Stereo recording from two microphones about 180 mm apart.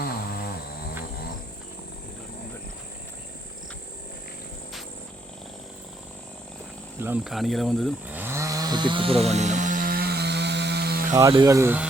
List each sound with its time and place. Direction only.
0.0 s a sound: 55° left (ahead or behind)
7.0 s speech: 5° right (ahead or behind)
8.0 s chainsaw: 10° right (ahead or behind); by 11.1 s 60° right (ahead or behind)
11.1 s speech: 20° right (ahead or behind)